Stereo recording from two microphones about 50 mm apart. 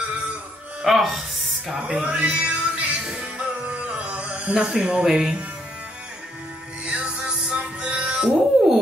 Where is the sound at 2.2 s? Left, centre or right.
Right.